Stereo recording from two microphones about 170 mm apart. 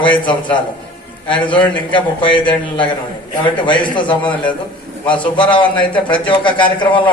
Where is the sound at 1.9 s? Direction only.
30° left (ahead or behind).